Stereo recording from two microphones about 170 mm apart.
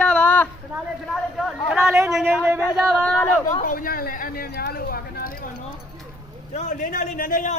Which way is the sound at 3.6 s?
55° left (ahead or behind).